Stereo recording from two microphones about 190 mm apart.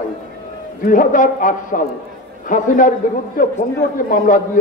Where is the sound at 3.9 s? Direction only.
45° left (ahead or behind).